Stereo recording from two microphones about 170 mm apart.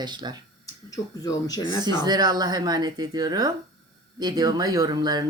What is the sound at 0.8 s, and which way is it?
Speech, 20° left (ahead or behind).